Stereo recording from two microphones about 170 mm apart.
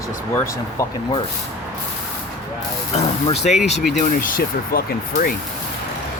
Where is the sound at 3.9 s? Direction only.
55° left (ahead or behind).